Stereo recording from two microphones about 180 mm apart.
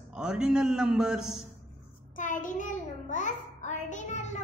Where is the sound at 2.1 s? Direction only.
45° left (ahead or behind).